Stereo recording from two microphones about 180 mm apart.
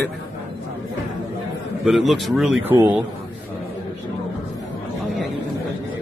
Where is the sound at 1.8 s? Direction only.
Centre (ahead or behind).